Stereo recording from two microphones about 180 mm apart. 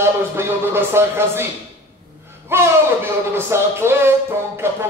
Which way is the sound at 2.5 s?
15° right (ahead or behind).